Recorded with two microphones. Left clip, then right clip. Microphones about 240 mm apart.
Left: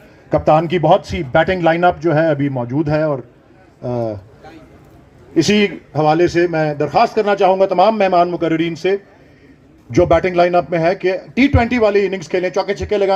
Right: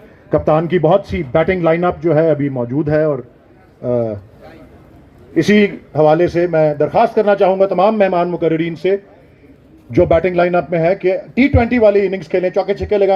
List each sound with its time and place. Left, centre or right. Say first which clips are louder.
0.3 s a man's voice: left 1 dB; left
5.3 s a man's voice: right 2 dB; left